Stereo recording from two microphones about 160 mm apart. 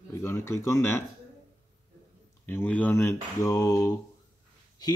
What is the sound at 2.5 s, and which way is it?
Speech, 10° left (ahead or behind).